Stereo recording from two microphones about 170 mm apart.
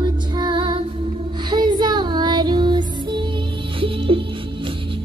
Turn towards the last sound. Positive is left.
turn(degrees=-30)  # may be behind; listen again after turning